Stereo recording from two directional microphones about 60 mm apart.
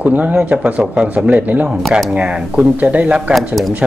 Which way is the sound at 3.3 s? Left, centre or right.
Centre.